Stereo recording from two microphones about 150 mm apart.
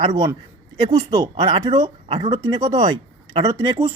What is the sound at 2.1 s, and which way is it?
Speech, 40° right (ahead or behind).